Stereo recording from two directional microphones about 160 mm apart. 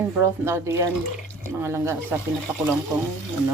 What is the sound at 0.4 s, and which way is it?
Speech, 15° right (ahead or behind).